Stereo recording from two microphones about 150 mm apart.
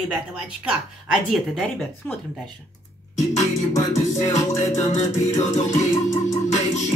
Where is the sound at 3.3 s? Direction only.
50° left (ahead or behind).